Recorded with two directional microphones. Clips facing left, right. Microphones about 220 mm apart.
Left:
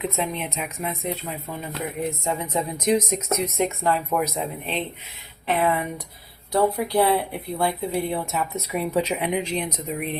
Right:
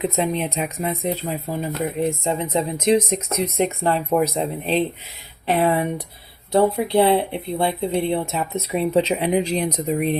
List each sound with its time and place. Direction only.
0.0 s speech: 35° right (ahead or behind)